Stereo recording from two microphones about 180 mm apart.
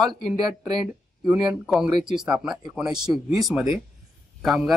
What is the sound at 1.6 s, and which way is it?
Speech, 5° right (ahead or behind).